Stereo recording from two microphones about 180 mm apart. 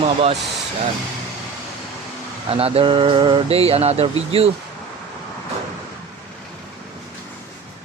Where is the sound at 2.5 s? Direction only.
35° right (ahead or behind).